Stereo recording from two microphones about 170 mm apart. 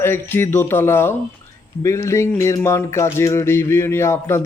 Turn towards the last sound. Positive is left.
turn(degrees=15)  # may be behind; listen again after turning